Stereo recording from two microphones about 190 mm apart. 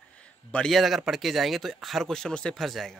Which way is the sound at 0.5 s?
Centre (ahead or behind).